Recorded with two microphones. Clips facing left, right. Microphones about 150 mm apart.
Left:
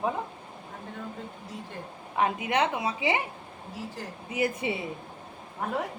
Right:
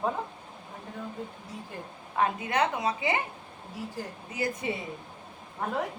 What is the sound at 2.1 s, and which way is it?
A woman's voice, 20° left (ahead or behind).